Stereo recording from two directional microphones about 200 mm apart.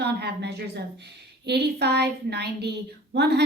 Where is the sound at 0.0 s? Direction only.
55° right (ahead or behind).